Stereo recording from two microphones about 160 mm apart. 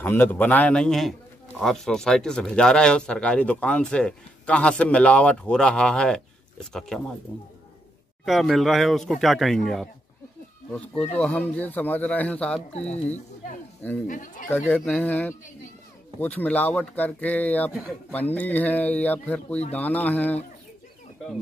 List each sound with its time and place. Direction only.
0.0 s speech: 10° left (ahead or behind)
11.1 s speech: 5° left (ahead or behind)
14.0 s speech: 55° left (ahead or behind)
14.5 s speech: 10° left (ahead or behind)